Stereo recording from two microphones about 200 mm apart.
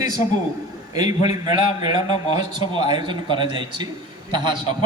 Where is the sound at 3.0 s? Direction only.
25° right (ahead or behind).